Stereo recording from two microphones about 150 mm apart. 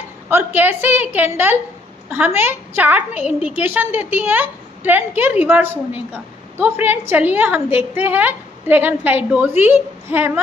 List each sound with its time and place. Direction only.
0.3 s a woman's voice: 15° right (ahead or behind)